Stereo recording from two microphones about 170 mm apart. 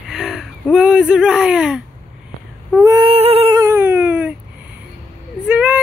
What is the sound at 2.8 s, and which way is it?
Female singing, 20° right (ahead or behind).